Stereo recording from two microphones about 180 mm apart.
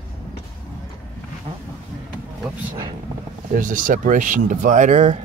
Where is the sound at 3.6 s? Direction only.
50° right (ahead or behind).